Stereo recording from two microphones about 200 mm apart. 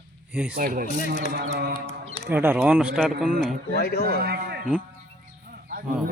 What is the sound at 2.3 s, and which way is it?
Speech, 10° right (ahead or behind).